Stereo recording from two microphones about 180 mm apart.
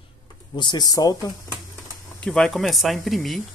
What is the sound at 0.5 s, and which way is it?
Speech, 25° left (ahead or behind).